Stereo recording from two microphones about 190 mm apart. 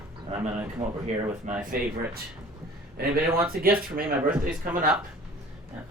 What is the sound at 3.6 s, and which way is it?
Speech, 50° right (ahead or behind).